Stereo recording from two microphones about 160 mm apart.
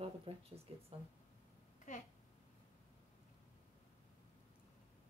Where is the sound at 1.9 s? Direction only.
50° left (ahead or behind).